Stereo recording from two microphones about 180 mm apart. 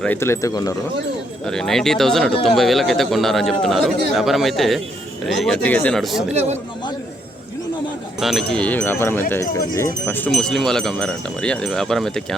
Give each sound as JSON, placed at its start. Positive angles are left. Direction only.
{"t": 0.0, "sound": "speech", "side_deg": 10}
{"t": 1.5, "sound": "speech", "side_deg": 5}
{"t": 8.2, "sound": "speech", "side_deg": 0}